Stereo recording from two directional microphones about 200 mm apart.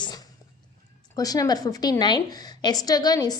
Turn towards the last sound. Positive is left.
turn(degrees=20)  # may be behind; listen again after turning